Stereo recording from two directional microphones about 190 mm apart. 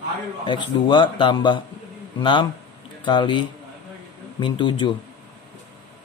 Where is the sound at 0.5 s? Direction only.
25° left (ahead or behind).